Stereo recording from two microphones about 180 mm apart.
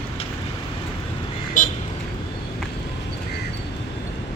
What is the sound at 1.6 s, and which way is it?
Vehicle, 45° left (ahead or behind).